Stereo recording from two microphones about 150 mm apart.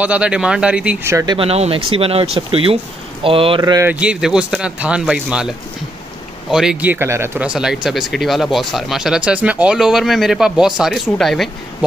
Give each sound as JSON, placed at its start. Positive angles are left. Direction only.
{"t": 0.0, "sound": "speech", "side_deg": -10}
{"t": 1.1, "sound": "speech", "side_deg": -30}
{"t": 3.8, "sound": "speech", "side_deg": -10}
{"t": 6.5, "sound": "speech", "side_deg": -5}